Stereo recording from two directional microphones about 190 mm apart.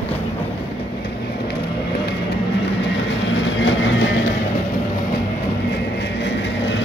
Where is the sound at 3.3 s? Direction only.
75° left (ahead or behind).